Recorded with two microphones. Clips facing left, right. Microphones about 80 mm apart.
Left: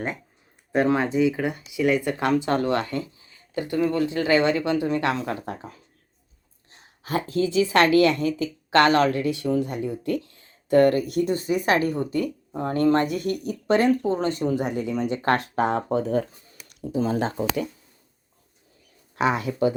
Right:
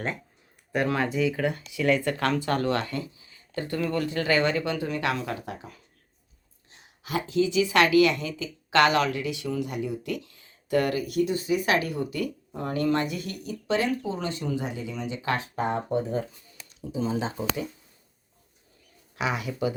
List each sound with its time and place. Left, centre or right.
0.7 s speech: left
7.0 s speech: left
19.1 s speech: left